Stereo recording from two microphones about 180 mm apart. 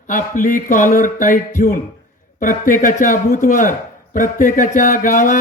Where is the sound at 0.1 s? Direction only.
45° left (ahead or behind).